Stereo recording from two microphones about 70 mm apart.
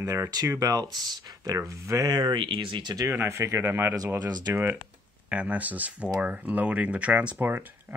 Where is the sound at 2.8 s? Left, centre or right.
Right.